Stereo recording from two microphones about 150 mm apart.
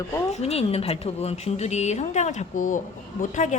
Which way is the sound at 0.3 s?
45° left (ahead or behind).